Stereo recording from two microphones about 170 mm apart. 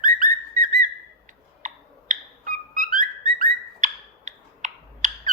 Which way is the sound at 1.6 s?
50° right (ahead or behind).